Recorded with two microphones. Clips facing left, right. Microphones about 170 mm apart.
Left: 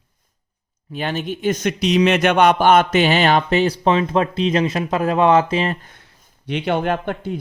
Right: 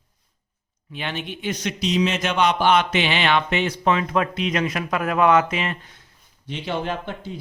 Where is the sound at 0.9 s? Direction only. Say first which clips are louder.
Left 6 dB; 40° left (ahead or behind).